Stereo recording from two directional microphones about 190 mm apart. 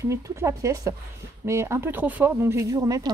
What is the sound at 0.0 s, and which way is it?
Speech, 15° right (ahead or behind).